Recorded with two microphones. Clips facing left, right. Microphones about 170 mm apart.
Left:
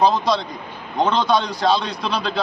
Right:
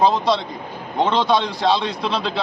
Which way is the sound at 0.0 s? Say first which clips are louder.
Even; centre (ahead or behind).